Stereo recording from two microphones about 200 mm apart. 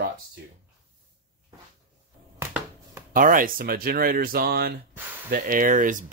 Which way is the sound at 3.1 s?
45° right (ahead or behind).